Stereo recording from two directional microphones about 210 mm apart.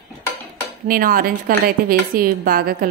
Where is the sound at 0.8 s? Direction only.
45° right (ahead or behind).